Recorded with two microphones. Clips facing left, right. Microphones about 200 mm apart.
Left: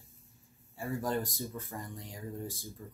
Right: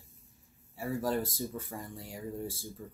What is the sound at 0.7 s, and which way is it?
Speech, 5° right (ahead or behind).